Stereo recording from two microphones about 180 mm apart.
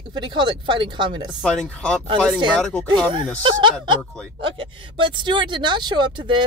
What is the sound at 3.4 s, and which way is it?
Speech, 25° right (ahead or behind).